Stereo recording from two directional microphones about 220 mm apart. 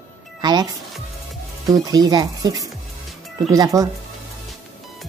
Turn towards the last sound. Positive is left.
turn(degrees=-15)  # may be behind; listen again after turning